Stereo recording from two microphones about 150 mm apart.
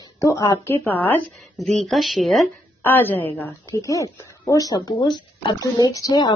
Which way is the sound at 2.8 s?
15° left (ahead or behind).